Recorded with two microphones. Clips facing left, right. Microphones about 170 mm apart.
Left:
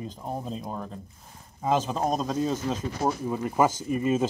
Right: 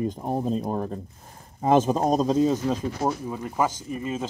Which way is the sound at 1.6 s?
45° right (ahead or behind).